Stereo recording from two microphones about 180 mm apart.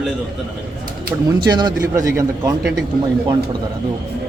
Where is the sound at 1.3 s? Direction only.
25° right (ahead or behind).